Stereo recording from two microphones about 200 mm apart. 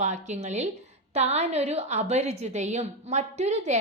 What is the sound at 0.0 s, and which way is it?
Speech, 35° right (ahead or behind).